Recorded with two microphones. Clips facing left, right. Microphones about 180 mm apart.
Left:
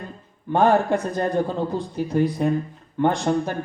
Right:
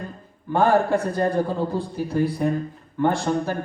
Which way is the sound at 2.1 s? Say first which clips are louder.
Left 1 dB; 20° left (ahead or behind).